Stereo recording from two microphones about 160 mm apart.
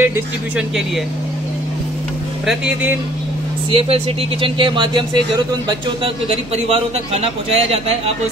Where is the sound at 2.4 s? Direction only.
5° right (ahead or behind).